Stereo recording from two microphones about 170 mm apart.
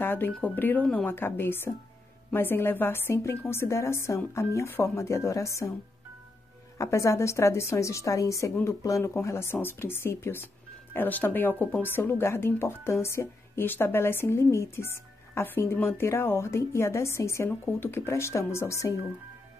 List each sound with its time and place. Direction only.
0.0 s a sound: 10° left (ahead or behind)
0.3 s speech: 10° left (ahead or behind)
6.8 s speech: 15° left (ahead or behind)